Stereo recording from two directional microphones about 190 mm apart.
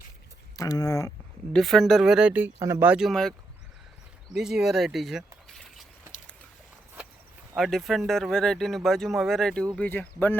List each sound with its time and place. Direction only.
0.5 s speech: 20° left (ahead or behind)
1.5 s speech: centre (ahead or behind)
4.4 s speech: centre (ahead or behind)
7.5 s speech: centre (ahead or behind)